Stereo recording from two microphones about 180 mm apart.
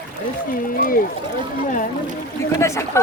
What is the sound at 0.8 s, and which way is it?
Speech, 50° left (ahead or behind).